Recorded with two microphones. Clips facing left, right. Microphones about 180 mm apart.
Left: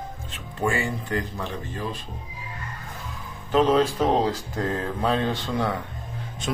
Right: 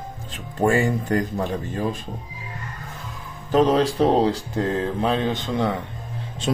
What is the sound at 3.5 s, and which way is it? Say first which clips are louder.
Speech: right 2 dB; 40° right (ahead or behind).